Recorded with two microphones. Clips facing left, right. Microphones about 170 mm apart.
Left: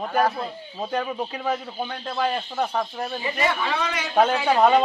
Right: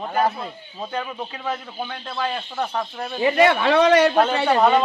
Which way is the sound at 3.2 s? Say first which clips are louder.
Right 10 dB; 70° right (ahead or behind).